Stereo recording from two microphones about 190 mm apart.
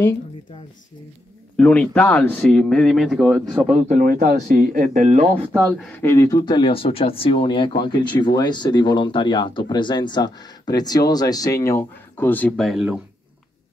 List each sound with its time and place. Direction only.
1.6 s speech: 5° left (ahead or behind)
3.9 s speech: 50° right (ahead or behind)
5.4 s speech: 20° right (ahead or behind)
5.7 s speech: 5° left (ahead or behind)